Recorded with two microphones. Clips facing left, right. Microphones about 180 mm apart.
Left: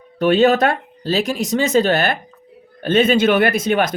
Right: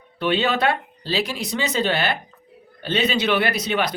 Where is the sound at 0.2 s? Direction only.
45° left (ahead or behind).